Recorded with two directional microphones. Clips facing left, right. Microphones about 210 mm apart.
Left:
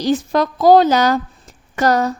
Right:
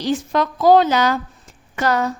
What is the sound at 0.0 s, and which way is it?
A woman's voice, 40° left (ahead or behind).